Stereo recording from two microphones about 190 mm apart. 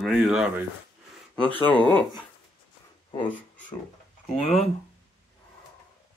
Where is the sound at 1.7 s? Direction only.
25° right (ahead or behind).